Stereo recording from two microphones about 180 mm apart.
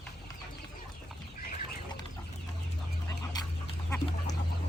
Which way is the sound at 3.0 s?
20° left (ahead or behind).